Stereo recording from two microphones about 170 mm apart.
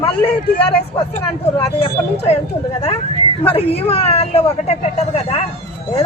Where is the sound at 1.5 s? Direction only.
35° left (ahead or behind).